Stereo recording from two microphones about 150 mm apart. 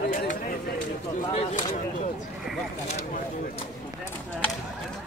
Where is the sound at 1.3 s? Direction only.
45° left (ahead or behind).